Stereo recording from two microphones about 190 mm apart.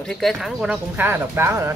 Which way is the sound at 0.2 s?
Centre (ahead or behind).